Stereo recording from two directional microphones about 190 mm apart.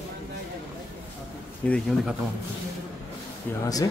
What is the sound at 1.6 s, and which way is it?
Speech, 5° left (ahead or behind).